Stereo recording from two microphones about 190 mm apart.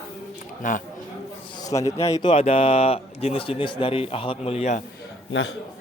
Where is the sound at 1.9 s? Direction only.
35° left (ahead or behind).